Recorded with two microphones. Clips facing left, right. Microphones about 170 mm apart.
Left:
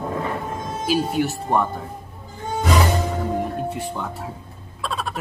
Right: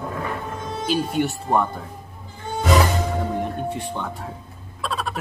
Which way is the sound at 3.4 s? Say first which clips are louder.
Left 1 dB; 5° left (ahead or behind).